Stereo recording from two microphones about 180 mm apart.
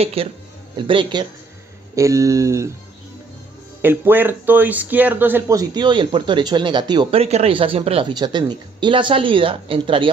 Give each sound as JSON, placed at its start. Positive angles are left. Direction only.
{"t": 0.0, "sound": "speech", "side_deg": -35}
{"t": 2.0, "sound": "a sound", "side_deg": -15}
{"t": 3.8, "sound": "speech", "side_deg": -10}